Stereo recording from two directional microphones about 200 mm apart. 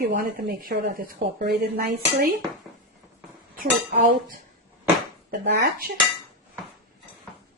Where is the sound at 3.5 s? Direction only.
45° right (ahead or behind).